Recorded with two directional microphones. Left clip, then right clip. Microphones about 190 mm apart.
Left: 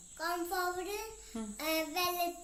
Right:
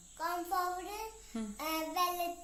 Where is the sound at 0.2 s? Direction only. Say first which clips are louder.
Even; 20° right (ahead or behind).